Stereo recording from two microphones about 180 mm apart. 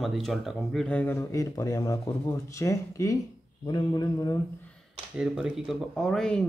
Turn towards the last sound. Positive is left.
turn(degrees=5)  # may be behind; listen again after turning